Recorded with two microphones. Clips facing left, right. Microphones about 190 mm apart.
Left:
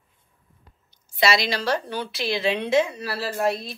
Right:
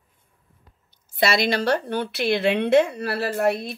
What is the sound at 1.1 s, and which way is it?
A woman's voice, 55° right (ahead or behind).